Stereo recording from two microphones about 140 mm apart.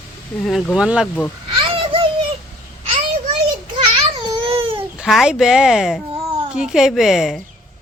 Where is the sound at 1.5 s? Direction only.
40° right (ahead or behind).